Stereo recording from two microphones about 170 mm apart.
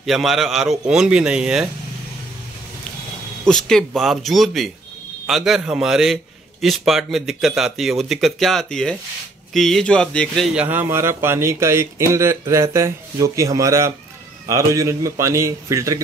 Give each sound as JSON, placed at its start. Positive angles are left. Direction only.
{"t": 0.0, "sound": "speech", "side_deg": 0}
{"t": 3.4, "sound": "speech", "side_deg": 5}